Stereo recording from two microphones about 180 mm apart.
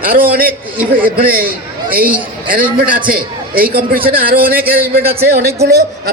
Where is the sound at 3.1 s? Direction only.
50° right (ahead or behind).